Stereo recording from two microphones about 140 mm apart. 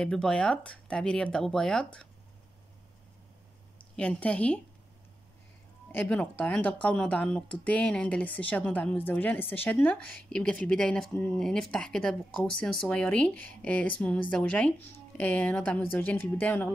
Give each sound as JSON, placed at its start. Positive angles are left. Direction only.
{"t": 0.0, "sound": "speech", "side_deg": 5}
{"t": 3.7, "sound": "a woman's voice", "side_deg": 10}
{"t": 5.9, "sound": "speech", "side_deg": 10}